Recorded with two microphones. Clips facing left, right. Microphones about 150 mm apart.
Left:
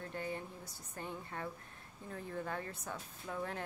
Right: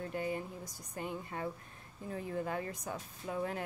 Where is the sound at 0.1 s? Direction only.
10° right (ahead or behind).